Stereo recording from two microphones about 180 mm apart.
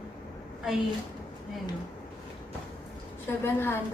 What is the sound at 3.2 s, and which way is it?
Speech, 10° left (ahead or behind).